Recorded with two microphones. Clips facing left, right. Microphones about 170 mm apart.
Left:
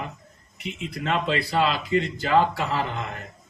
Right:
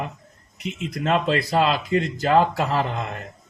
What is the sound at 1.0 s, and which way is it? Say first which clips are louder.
Speech: right 4 dB; 45° right (ahead or behind).